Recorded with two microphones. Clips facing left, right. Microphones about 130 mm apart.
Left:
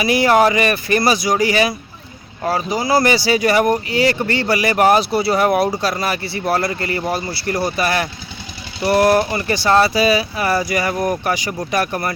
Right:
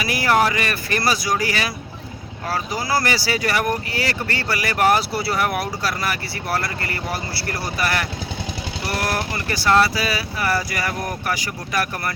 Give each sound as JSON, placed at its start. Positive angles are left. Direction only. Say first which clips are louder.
{"t": 0.0, "sound": "speech", "louder": "left 6 dB", "side_deg": 20}